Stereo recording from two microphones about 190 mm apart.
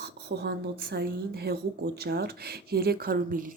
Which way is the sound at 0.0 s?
60° right (ahead or behind).